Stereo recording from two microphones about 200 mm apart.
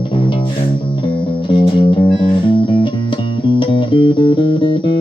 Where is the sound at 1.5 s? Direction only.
25° left (ahead or behind).